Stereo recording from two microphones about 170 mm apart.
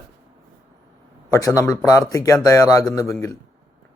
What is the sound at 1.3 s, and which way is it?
Speech, 20° left (ahead or behind).